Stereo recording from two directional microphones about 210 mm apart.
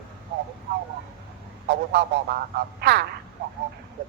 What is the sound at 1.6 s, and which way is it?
Speech, 50° right (ahead or behind).